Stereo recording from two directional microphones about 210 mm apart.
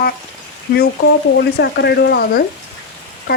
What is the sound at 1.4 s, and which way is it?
Speech, 50° left (ahead or behind).